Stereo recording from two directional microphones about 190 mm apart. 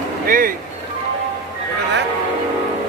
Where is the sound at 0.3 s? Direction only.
50° right (ahead or behind).